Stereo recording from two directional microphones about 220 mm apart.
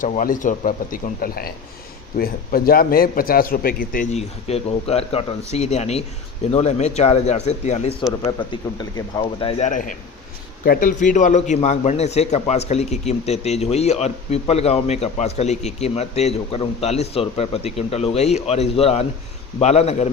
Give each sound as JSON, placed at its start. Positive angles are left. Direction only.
{"t": 0.0, "sound": "a man's voice", "side_deg": 35}
{"t": 8.2, "sound": "a man's voice", "side_deg": 20}